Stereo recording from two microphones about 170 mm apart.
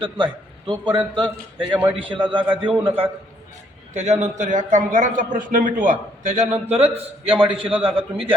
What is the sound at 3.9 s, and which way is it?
A man's voice, 45° right (ahead or behind).